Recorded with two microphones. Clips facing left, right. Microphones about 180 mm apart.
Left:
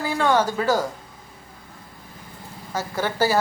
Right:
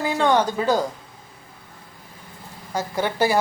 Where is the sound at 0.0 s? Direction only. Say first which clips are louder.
Right 1 dB; 20° right (ahead or behind).